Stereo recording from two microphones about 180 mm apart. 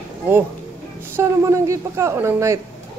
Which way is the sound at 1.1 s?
15° right (ahead or behind).